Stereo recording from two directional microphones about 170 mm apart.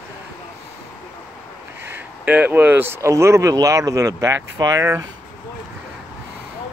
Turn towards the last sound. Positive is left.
turn(degrees=-20)  # may be behind; listen again after turning